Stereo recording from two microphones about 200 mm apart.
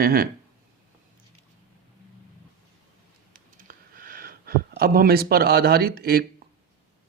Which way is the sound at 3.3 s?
45° right (ahead or behind).